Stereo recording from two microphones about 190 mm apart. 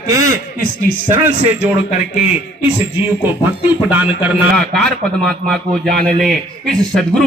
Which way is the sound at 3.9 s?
10° right (ahead or behind).